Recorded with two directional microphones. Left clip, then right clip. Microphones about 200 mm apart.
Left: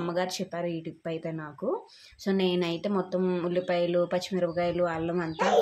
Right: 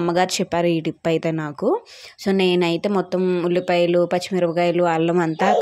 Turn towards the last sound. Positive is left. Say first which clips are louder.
# right 10 dB
turn(degrees=-45)  # may be behind; listen again after turning